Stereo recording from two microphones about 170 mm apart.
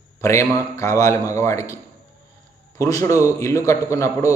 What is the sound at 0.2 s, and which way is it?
A man's voice, 15° left (ahead or behind).